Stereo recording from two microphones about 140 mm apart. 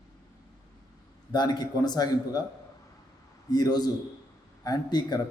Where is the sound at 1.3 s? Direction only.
30° left (ahead or behind).